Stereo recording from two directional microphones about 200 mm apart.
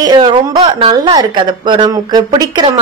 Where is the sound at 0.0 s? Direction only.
20° right (ahead or behind).